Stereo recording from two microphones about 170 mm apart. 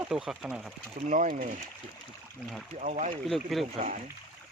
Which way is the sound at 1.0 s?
50° right (ahead or behind).